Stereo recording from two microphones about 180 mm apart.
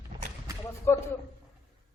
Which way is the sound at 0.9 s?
15° left (ahead or behind).